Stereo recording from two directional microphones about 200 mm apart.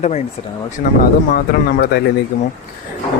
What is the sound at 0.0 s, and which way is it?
Speech, 30° left (ahead or behind).